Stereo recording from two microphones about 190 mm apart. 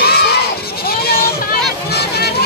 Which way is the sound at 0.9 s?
55° left (ahead or behind).